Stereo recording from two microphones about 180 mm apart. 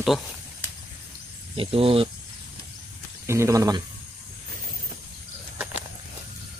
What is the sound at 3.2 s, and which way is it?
Speech, 15° right (ahead or behind).